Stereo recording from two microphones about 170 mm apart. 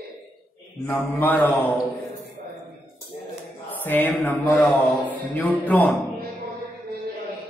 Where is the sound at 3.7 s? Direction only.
10° left (ahead or behind).